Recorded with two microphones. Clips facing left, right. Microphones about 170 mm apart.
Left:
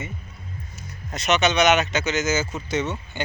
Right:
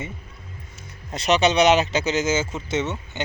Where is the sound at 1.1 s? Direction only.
30° right (ahead or behind).